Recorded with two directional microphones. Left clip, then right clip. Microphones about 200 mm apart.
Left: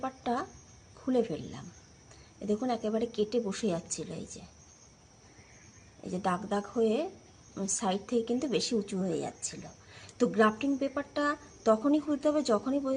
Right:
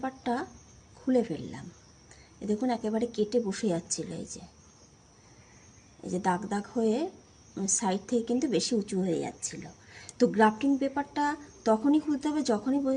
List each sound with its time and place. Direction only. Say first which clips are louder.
0.0 s a woman's voice: right 1 dB; 15° left (ahead or behind)
2.5 s a woman's voice: right 1 dB; 10° left (ahead or behind)
6.1 s a woman's voice: right 2 dB; 10° left (ahead or behind)